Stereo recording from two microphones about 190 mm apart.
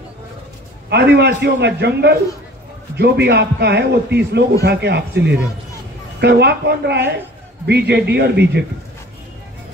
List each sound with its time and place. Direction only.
0.8 s a man's voice: 60° right (ahead or behind)